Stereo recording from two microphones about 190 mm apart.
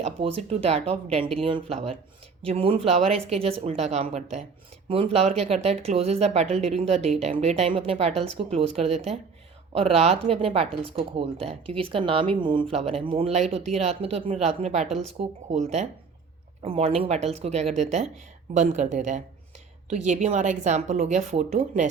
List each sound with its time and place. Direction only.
0.0 s speech: 30° right (ahead or behind)
16.6 s speech: 35° right (ahead or behind)